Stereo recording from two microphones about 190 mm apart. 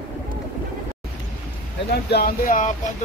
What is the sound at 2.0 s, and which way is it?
Speech, 55° left (ahead or behind).